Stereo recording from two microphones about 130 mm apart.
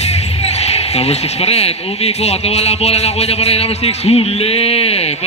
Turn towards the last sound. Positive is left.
turn(degrees=50)  # may be behind; listen again after turning